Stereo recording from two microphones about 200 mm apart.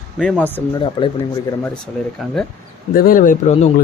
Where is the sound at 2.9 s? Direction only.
45° left (ahead or behind).